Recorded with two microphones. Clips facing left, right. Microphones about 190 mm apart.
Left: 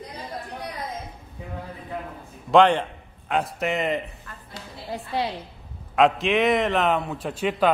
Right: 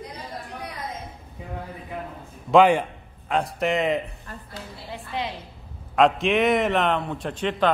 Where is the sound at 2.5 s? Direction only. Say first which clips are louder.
Right 1 dB; 5° right (ahead or behind).